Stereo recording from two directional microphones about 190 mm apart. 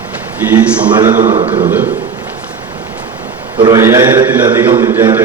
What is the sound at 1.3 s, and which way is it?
Speech, 30° right (ahead or behind).